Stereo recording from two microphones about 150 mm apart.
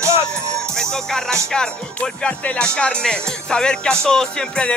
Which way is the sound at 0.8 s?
5° left (ahead or behind).